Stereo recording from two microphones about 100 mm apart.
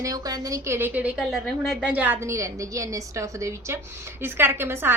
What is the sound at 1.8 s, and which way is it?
Speech, 15° right (ahead or behind).